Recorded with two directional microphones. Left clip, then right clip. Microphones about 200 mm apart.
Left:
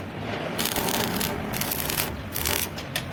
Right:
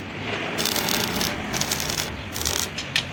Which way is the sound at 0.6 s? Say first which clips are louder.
Right 2 dB; 25° left (ahead or behind).